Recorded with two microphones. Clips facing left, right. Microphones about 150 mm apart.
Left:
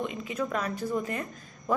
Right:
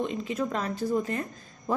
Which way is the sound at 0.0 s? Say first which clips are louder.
Right 2 dB; 30° right (ahead or behind).